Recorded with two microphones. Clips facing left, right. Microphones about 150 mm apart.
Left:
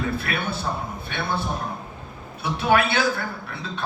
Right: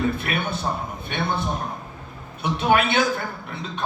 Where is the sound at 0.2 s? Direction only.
20° right (ahead or behind).